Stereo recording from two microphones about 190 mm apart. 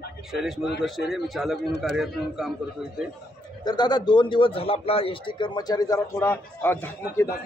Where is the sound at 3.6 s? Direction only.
20° left (ahead or behind).